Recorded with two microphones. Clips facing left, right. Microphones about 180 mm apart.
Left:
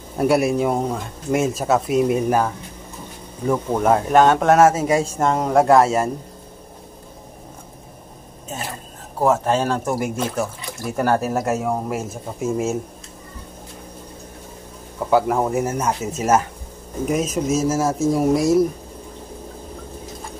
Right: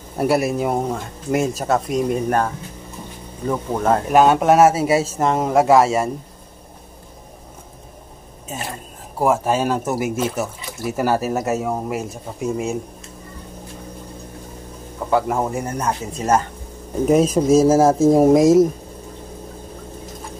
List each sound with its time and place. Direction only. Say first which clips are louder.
0.2 s speech: left 1 dB; centre (ahead or behind)
4.1 s a man's voice: right 2 dB; 5° right (ahead or behind)
8.5 s a sound: right 1 dB; 5° right (ahead or behind)
9.2 s speech: even; 10° right (ahead or behind)
15.0 s speech: left 2 dB; centre (ahead or behind)
17.1 s speech: right 7 dB; 30° right (ahead or behind)
18.0 s speech: right 4 dB; 45° right (ahead or behind)
18.3 s speech: right 4 dB; 90° right